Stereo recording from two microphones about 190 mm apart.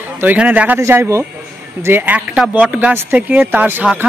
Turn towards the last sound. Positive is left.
turn(degrees=-10)  # may be behind; listen again after turning